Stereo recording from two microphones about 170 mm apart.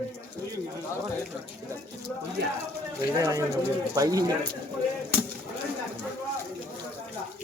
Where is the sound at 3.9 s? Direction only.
20° right (ahead or behind).